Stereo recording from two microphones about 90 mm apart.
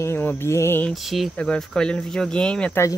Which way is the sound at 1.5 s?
10° left (ahead or behind).